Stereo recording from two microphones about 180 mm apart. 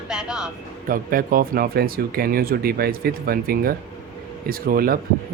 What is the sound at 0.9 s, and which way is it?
Speech, 50° right (ahead or behind).